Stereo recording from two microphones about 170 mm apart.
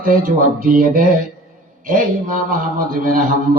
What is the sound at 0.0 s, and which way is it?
A man's voice, 55° right (ahead or behind).